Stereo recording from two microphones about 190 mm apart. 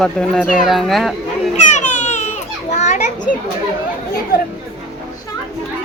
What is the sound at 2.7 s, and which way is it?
Children playing, 35° left (ahead or behind).